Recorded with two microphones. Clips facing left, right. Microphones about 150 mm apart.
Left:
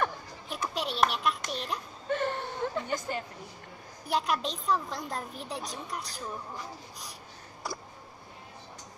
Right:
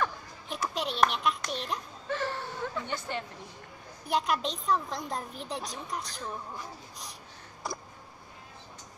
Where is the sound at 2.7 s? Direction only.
40° left (ahead or behind).